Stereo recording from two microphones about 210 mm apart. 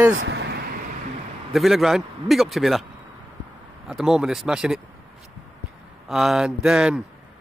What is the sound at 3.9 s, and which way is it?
Speech, centre (ahead or behind).